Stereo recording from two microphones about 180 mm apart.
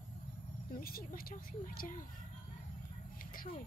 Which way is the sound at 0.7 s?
55° left (ahead or behind).